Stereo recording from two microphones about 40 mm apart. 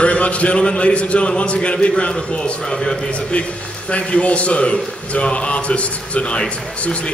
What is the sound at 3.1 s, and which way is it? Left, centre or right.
A man's voice, left.